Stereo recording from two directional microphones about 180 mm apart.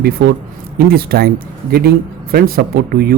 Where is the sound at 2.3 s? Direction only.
60° right (ahead or behind).